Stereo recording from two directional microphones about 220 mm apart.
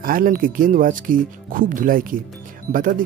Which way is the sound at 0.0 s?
40° right (ahead or behind).